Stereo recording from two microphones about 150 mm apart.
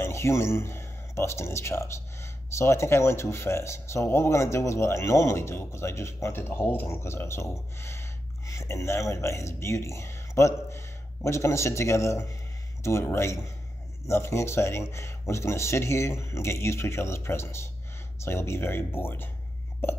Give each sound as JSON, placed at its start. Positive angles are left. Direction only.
{"t": 0.0, "sound": "speech", "side_deg": 20}